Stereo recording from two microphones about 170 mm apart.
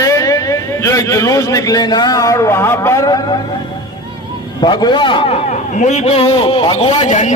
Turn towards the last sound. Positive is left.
turn(degrees=45)  # may be behind; listen again after turning